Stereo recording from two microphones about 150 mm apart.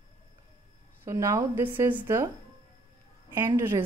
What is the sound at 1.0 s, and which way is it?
Speech, 20° right (ahead or behind).